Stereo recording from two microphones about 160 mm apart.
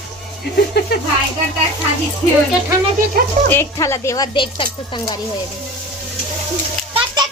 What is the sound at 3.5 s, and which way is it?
Speech, 15° left (ahead or behind).